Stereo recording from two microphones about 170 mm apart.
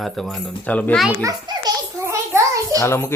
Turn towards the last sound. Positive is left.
turn(degrees=15)  # may be behind; listen again after turning